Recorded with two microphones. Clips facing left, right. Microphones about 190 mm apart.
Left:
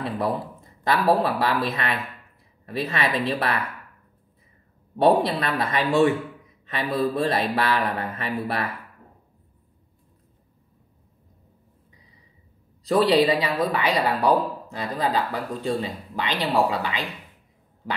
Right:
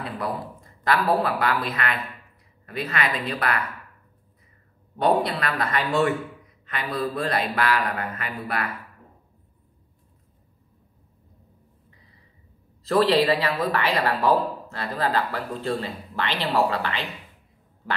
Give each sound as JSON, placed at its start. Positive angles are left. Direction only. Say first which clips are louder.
{"t": 0.2, "sound": "speech", "louder": "left 4 dB", "side_deg": 20}
{"t": 5.0, "sound": "speech", "louder": "left 3 dB", "side_deg": 25}
{"t": 12.8, "sound": "speech", "louder": "left 1 dB", "side_deg": 10}